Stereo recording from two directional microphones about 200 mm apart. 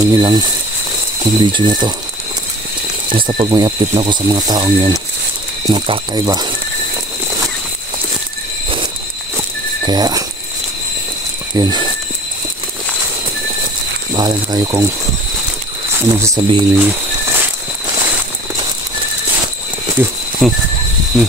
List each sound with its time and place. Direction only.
0.1 s speech: 20° right (ahead or behind)
3.1 s speech: 25° right (ahead or behind)
9.8 s speech: 20° right (ahead or behind)
11.5 s speech: 20° right (ahead or behind)
14.1 s speech: 20° right (ahead or behind)
16.0 s speech: 15° right (ahead or behind)
16.7 s a sound: 10° right (ahead or behind)
20.0 s speech: centre (ahead or behind)